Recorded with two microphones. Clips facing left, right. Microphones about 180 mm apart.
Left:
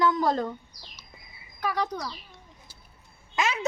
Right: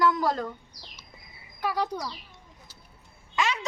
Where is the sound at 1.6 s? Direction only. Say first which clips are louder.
Even; 5° right (ahead or behind).